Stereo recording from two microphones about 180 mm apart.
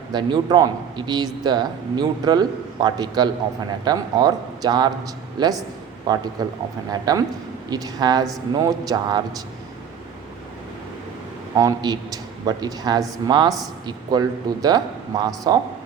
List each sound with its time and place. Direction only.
0.1 s speech: 25° right (ahead or behind)
11.5 s speech: 20° right (ahead or behind)